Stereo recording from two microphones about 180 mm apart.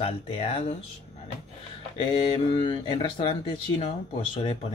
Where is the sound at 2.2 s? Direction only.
25° left (ahead or behind).